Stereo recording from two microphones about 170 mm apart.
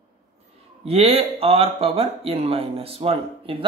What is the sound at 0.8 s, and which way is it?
Speech, 35° right (ahead or behind).